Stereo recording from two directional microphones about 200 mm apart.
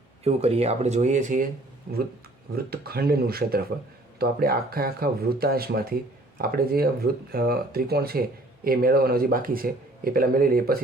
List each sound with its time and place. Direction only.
0.3 s speech: 30° right (ahead or behind); by 10.8 s 45° right (ahead or behind)